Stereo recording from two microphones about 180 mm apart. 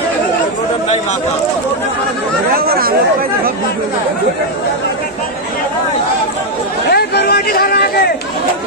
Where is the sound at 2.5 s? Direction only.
55° right (ahead or behind).